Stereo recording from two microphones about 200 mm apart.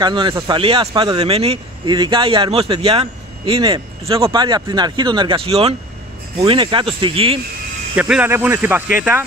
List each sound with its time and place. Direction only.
0.0 s speech: 25° right (ahead or behind)
7.9 s speech: 10° right (ahead or behind)